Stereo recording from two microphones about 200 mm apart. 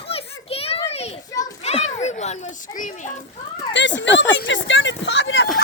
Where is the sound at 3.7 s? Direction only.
65° left (ahead or behind).